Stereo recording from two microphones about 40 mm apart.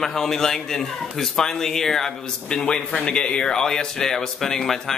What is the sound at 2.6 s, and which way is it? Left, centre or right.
A man's voice, left.